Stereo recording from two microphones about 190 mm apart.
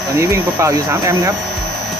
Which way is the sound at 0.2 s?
15° right (ahead or behind).